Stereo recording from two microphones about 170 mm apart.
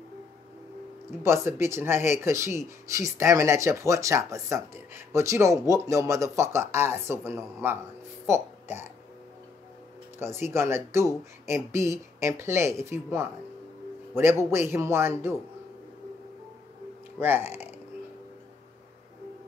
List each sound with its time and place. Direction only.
1.2 s speech: 15° right (ahead or behind)
10.1 s speech: 15° right (ahead or behind)